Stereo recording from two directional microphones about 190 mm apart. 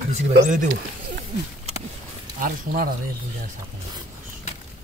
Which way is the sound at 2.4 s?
45° right (ahead or behind).